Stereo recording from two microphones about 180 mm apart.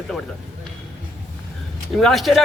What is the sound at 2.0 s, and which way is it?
Speech, centre (ahead or behind).